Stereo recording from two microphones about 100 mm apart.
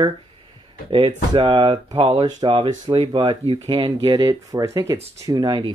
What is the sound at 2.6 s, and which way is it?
Speech, 60° right (ahead or behind).